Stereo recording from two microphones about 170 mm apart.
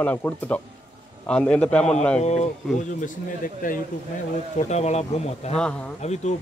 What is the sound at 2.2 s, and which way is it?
Speech, 40° left (ahead or behind).